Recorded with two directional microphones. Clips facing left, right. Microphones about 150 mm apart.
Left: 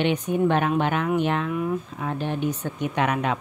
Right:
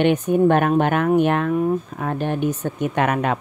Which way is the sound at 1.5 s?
40° right (ahead or behind).